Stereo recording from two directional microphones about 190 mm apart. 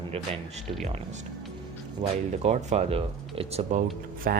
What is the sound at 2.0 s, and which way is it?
Speech, 35° right (ahead or behind).